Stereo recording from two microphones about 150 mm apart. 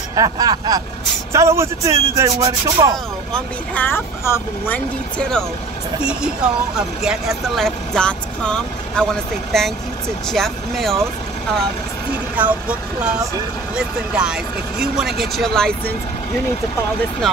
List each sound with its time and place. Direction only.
0.1 s speech: 25° right (ahead or behind)
3.3 s speech: 10° left (ahead or behind)
6.0 s speech: 5° right (ahead or behind)
12.4 s speech: 10° right (ahead or behind)